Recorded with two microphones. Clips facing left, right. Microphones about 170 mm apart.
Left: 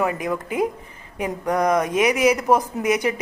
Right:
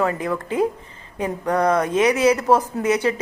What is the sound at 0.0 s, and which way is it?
Speech, 15° left (ahead or behind).